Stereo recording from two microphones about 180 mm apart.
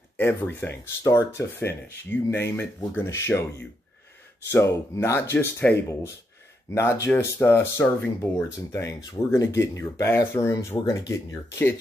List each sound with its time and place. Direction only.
0.2 s speech: 10° left (ahead or behind)
4.5 s speech: 15° left (ahead or behind)
6.7 s speech: 15° left (ahead or behind)